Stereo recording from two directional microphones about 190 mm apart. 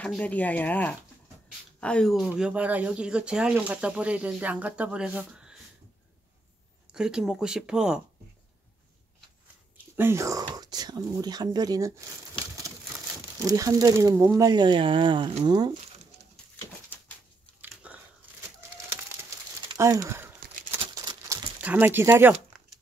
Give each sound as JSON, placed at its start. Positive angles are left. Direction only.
{"t": 0.0, "sound": "speech", "side_deg": 5}
{"t": 6.9, "sound": "speech", "side_deg": -5}
{"t": 9.9, "sound": "speech", "side_deg": -15}
{"t": 13.4, "sound": "speech", "side_deg": -20}
{"t": 17.6, "sound": "a sound", "side_deg": -5}
{"t": 19.7, "sound": "speech", "side_deg": -20}
{"t": 20.9, "sound": "a sound", "side_deg": -20}
{"t": 21.5, "sound": "speech", "side_deg": -10}